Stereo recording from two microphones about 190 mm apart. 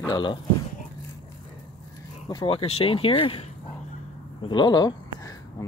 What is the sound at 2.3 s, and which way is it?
Speech, 25° left (ahead or behind).